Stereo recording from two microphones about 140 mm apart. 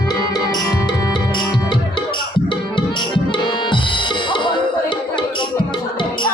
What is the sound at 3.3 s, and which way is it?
Music, 35° left (ahead or behind).